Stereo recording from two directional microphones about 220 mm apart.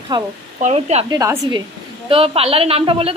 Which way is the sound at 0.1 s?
20° right (ahead or behind).